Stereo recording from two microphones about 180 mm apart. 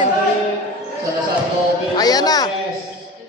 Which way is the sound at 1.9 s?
20° left (ahead or behind).